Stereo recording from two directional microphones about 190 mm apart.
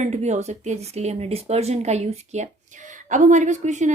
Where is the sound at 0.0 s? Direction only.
35° right (ahead or behind).